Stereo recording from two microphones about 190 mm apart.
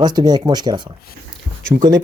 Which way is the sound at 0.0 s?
20° right (ahead or behind).